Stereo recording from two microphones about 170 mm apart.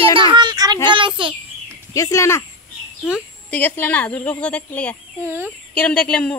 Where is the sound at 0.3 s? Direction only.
25° right (ahead or behind).